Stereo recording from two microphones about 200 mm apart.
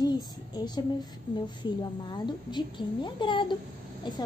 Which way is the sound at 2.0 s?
20° left (ahead or behind).